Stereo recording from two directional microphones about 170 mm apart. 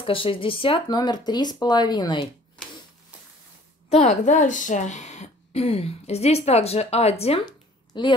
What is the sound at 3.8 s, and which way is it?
Speech, 40° left (ahead or behind).